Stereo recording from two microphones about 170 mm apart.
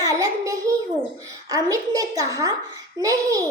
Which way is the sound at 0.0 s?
20° right (ahead or behind).